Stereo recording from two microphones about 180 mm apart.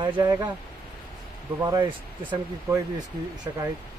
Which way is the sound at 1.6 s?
25° right (ahead or behind).